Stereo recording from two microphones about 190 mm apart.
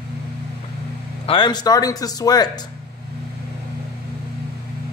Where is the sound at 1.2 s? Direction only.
25° left (ahead or behind).